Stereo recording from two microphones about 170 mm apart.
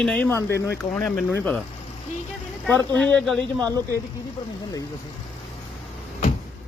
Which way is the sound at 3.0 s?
5° left (ahead or behind).